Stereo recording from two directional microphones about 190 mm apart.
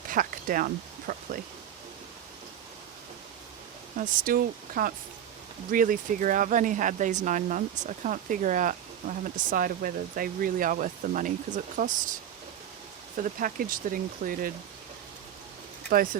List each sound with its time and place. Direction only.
0.1 s a sound: 45° right (ahead or behind)
3.9 s speech: 45° right (ahead or behind)
13.1 s speech: 45° right (ahead or behind)